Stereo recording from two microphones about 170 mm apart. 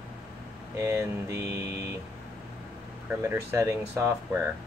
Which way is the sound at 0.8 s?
15° right (ahead or behind).